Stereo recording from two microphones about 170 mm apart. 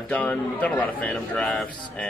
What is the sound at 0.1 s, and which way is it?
A man's voice, 10° left (ahead or behind).